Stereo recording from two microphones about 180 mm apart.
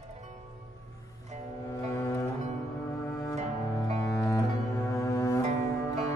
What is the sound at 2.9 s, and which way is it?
Cello, 20° left (ahead or behind).